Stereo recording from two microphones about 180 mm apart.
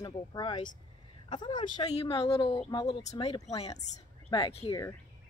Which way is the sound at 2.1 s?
20° left (ahead or behind).